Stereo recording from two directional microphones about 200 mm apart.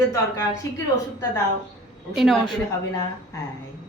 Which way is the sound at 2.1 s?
Centre (ahead or behind).